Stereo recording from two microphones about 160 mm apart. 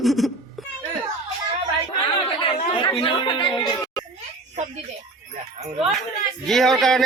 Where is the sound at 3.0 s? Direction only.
30° left (ahead or behind).